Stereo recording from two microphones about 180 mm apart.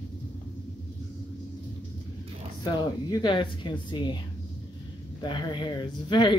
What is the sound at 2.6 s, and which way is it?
Speech, 20° left (ahead or behind).